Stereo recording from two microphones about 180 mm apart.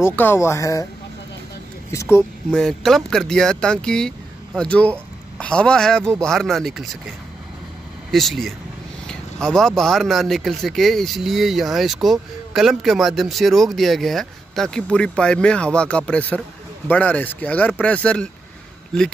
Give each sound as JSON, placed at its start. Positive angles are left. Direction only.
{"t": 0.0, "sound": "speech", "side_deg": 10}
{"t": 1.9, "sound": "speech", "side_deg": 15}
{"t": 2.5, "sound": "speech", "side_deg": 0}
{"t": 8.1, "sound": "speech", "side_deg": 0}